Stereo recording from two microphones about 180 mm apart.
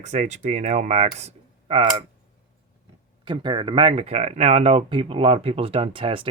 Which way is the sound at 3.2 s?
25° right (ahead or behind).